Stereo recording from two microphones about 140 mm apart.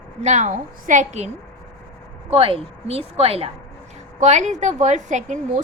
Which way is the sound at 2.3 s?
40° right (ahead or behind).